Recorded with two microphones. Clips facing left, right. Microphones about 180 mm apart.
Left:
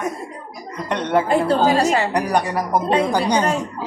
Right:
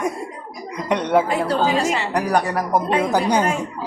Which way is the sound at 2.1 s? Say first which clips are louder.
Even; centre (ahead or behind).